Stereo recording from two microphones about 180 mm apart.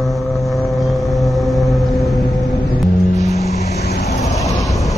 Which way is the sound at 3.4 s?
40° left (ahead or behind).